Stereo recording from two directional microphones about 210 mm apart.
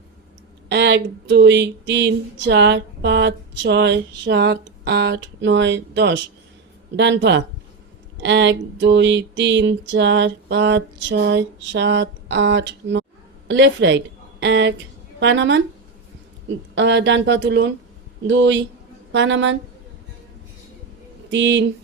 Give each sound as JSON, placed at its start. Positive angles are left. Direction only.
{"t": 0.7, "sound": "a woman's voice", "side_deg": -55}
{"t": 16.7, "sound": "speech", "side_deg": -55}
{"t": 21.2, "sound": "speech", "side_deg": -60}